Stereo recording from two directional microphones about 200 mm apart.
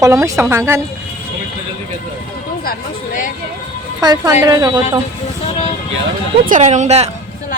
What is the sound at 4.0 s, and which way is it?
Speech, 20° right (ahead or behind).